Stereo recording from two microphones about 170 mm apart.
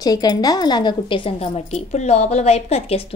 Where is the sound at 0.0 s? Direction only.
25° left (ahead or behind).